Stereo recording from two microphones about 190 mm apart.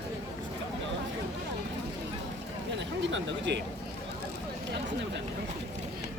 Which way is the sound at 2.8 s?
70° right (ahead or behind).